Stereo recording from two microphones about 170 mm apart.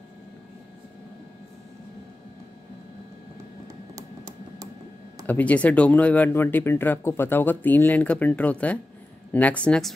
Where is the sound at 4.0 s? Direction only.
20° right (ahead or behind).